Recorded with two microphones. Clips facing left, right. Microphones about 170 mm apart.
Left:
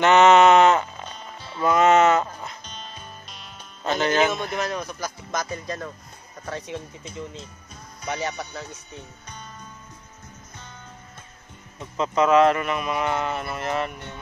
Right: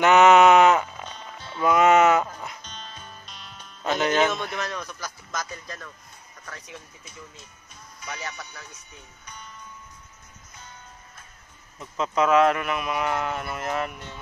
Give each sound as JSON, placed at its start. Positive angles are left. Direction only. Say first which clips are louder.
{"t": 0.0, "sound": "sheep", "louder": "left 1 dB", "side_deg": -10}
{"t": 1.0, "sound": "music", "louder": "left 1 dB", "side_deg": 5}
{"t": 1.6, "sound": "a sound", "louder": "left 1 dB", "side_deg": -10}
{"t": 3.8, "sound": "speech", "louder": "left 1 dB", "side_deg": 0}
{"t": 4.6, "sound": "speech", "louder": "left 4 dB", "side_deg": 35}
{"t": 5.0, "sound": "speech", "louder": "left 5 dB", "side_deg": 20}
{"t": 12.0, "sound": "speech", "louder": "left 2 dB", "side_deg": 0}